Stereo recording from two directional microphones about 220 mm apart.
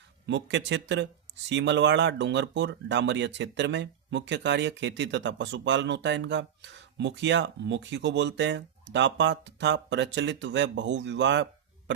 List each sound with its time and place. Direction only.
0.3 s speech: 55° right (ahead or behind)